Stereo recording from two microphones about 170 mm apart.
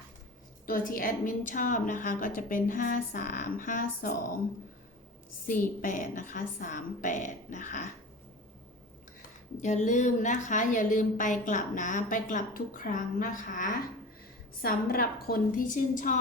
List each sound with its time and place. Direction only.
0.6 s a woman's voice: 55° left (ahead or behind)
5.5 s a woman's voice: 50° left (ahead or behind)
9.6 s a woman's voice: 45° left (ahead or behind)